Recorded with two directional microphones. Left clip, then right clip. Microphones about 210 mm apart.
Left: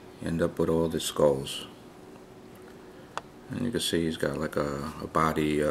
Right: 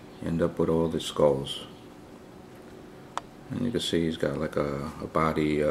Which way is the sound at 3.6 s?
5° left (ahead or behind).